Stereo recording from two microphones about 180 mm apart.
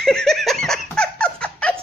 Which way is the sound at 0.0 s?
5° left (ahead or behind).